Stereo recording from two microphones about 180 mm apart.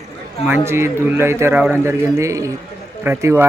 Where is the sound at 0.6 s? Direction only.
15° right (ahead or behind).